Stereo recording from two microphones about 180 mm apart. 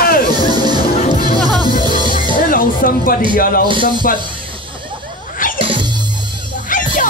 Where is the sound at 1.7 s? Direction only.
50° left (ahead or behind).